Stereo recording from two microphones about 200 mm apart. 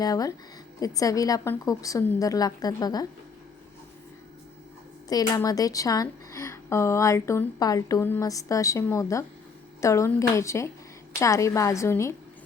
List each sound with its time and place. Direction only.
0.0 s speech: 20° left (ahead or behind)
5.0 s speech: 20° left (ahead or behind)